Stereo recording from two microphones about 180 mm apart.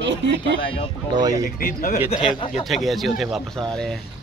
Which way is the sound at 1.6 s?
55° left (ahead or behind).